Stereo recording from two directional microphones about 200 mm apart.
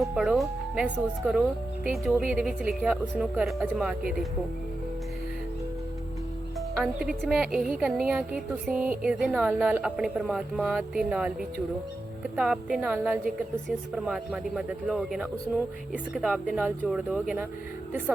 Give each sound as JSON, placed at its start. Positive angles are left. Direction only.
{"t": 0.0, "sound": "a woman's voice", "side_deg": 0}
{"t": 6.7, "sound": "a woman's voice", "side_deg": -5}